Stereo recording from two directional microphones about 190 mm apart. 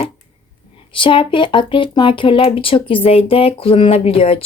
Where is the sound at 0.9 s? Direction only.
25° left (ahead or behind).